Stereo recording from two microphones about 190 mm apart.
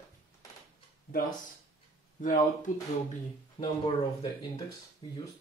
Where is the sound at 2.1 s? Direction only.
40° left (ahead or behind).